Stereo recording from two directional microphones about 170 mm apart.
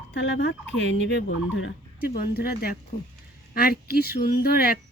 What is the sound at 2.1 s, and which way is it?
Speech, 60° left (ahead or behind).